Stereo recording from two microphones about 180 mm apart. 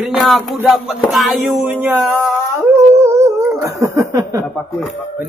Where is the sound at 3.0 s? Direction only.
15° right (ahead or behind).